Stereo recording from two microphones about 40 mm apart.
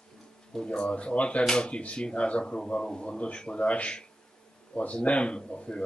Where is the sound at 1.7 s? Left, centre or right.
Left.